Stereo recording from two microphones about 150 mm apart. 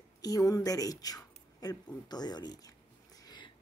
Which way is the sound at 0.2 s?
25° left (ahead or behind).